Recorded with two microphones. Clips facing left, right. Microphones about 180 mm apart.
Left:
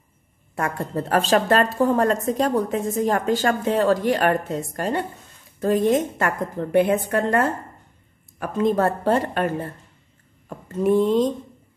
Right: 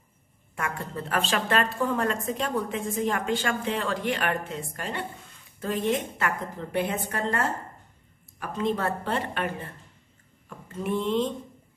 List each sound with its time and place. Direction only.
0.6 s a woman's voice: 40° left (ahead or behind)
10.7 s a woman's voice: 40° left (ahead or behind)